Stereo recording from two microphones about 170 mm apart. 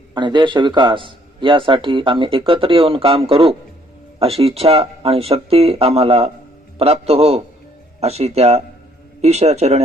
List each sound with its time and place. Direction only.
0.1 s speech: 25° right (ahead or behind)